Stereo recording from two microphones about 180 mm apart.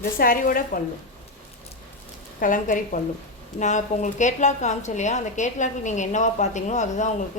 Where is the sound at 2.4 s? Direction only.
45° left (ahead or behind).